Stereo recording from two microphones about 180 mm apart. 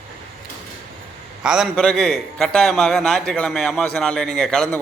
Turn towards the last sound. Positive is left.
turn(degrees=5)  # may be behind; listen again after turning